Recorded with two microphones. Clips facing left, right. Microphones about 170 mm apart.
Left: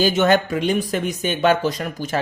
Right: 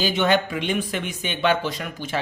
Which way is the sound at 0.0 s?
45° left (ahead or behind).